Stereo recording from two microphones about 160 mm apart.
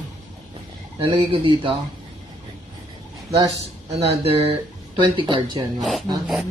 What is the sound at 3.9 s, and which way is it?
Speech, 40° right (ahead or behind).